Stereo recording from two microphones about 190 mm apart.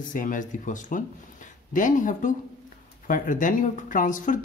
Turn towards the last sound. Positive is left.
turn(degrees=45)  # may be behind; listen again after turning